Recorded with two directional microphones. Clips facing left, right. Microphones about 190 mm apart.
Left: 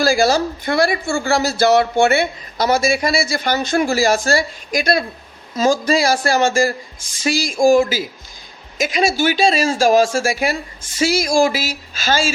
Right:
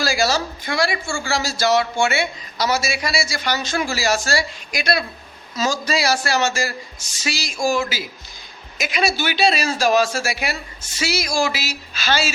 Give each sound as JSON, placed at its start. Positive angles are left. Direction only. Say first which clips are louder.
{"t": 0.0, "sound": "speech", "louder": "left 6 dB", "side_deg": 50}